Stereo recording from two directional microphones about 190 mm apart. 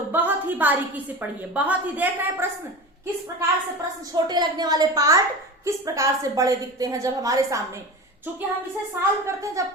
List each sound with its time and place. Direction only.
0.1 s a sound: 10° right (ahead or behind)
1.5 s a woman's voice: 10° right (ahead or behind)
4.1 s a woman's voice: 20° right (ahead or behind)
9.0 s a woman's voice: 15° right (ahead or behind)